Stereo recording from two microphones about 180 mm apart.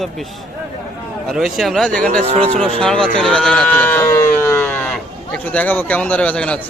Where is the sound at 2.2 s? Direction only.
35° right (ahead or behind).